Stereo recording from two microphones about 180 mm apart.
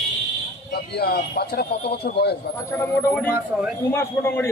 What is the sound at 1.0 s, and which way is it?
Speech, 60° left (ahead or behind).